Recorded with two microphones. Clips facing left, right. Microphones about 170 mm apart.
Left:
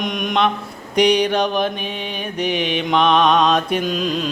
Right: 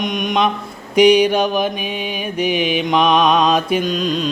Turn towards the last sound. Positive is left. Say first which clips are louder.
# right 2 dB
turn(degrees=5)  # may be behind; listen again after turning